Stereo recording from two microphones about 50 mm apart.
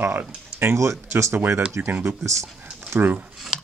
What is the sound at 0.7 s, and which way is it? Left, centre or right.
Speech, right.